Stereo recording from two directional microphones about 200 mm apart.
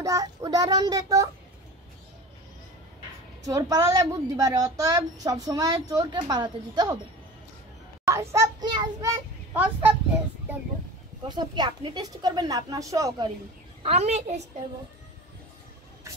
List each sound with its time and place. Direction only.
0.0 s a child's voice: 15° right (ahead or behind)
3.4 s a woman's voice: 15° right (ahead or behind)
8.1 s a woman's voice: 15° right (ahead or behind)
9.5 s a woman's voice: 10° right (ahead or behind)
11.2 s a woman's voice: 20° right (ahead or behind)
13.8 s a woman's voice: 35° right (ahead or behind)